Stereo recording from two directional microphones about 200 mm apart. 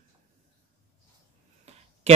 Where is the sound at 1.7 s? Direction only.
35° right (ahead or behind).